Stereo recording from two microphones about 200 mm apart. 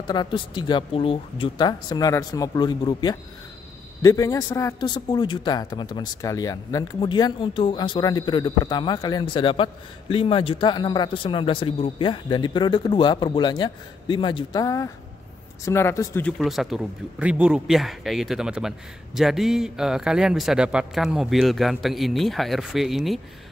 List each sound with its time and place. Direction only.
0.0 s a man's voice: 20° left (ahead or behind); by 23.2 s centre (ahead or behind)